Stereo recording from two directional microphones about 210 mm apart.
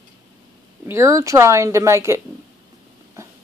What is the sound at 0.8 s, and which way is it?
Speech, 15° right (ahead or behind).